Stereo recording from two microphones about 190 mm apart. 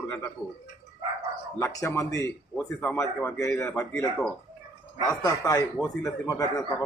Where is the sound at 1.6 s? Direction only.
15° left (ahead or behind).